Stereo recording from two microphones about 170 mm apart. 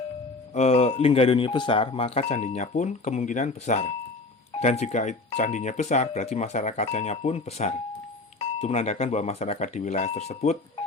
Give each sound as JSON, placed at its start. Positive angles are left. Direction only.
{"t": 0.5, "sound": "speech", "side_deg": 40}